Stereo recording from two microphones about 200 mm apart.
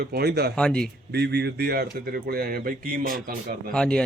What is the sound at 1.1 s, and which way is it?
Speech, 55° right (ahead or behind).